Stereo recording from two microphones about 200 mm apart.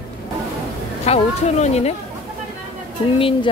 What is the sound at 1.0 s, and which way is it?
Speech, 30° left (ahead or behind).